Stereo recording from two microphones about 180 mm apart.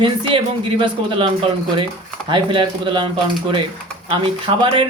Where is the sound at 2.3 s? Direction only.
25° right (ahead or behind).